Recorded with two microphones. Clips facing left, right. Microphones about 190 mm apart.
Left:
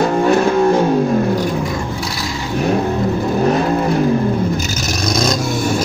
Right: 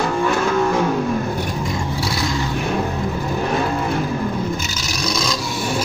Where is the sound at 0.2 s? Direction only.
35° left (ahead or behind).